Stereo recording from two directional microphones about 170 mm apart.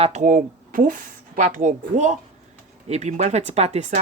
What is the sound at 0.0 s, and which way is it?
A woman's voice, 45° right (ahead or behind).